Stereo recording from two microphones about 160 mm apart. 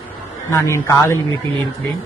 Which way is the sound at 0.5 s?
20° left (ahead or behind).